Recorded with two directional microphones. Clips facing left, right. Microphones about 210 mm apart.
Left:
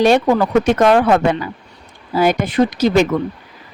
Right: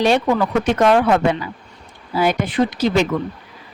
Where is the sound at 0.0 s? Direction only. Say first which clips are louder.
Left 3 dB; 45° left (ahead or behind).